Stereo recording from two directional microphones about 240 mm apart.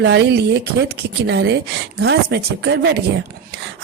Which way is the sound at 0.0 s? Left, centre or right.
Right.